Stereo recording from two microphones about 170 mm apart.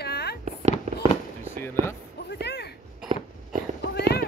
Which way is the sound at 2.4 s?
75° left (ahead or behind).